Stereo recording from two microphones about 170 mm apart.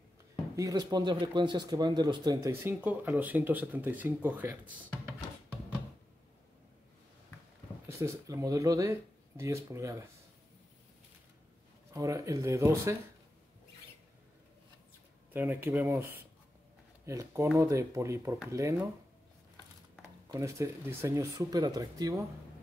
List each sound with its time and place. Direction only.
0.6 s speech: 20° right (ahead or behind)
7.9 s speech: 15° right (ahead or behind)
11.9 s speech: 20° right (ahead or behind)
15.3 s speech: 10° right (ahead or behind)
20.2 s speech: 15° right (ahead or behind)